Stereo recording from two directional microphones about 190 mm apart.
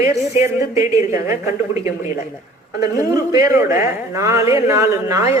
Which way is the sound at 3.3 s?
15° right (ahead or behind).